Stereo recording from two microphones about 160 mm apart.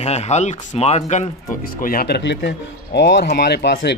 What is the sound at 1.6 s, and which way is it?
Speech, 65° left (ahead or behind).